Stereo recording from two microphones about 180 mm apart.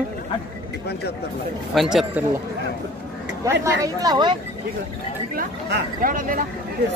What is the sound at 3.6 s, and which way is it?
Speech, 20° right (ahead or behind).